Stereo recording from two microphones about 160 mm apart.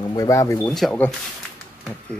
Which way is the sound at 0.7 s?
5° left (ahead or behind).